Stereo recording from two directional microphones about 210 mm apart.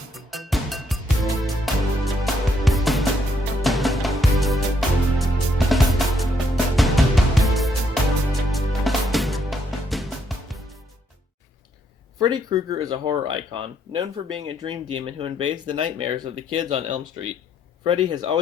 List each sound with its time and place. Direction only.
0.1 s music: centre (ahead or behind)
12.2 s speech: 20° right (ahead or behind)